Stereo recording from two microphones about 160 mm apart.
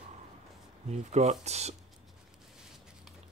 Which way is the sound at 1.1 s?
45° right (ahead or behind).